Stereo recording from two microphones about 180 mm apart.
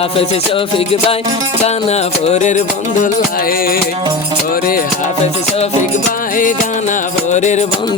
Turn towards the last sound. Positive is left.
turn(degrees=40)  # may be behind; listen again after turning